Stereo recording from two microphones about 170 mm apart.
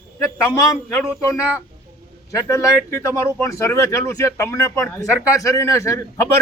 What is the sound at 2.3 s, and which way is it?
A man's voice, 20° left (ahead or behind).